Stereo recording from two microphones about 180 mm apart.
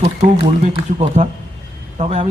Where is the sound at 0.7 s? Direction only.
35° right (ahead or behind).